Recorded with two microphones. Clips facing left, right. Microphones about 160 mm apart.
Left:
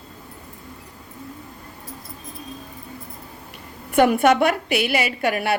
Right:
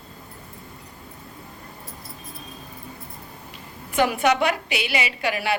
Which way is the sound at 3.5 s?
60° left (ahead or behind).